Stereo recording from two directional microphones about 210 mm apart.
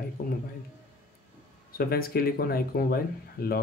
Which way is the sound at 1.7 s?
45° left (ahead or behind).